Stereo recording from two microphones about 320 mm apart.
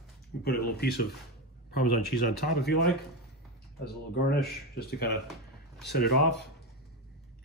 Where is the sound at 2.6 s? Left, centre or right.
Left.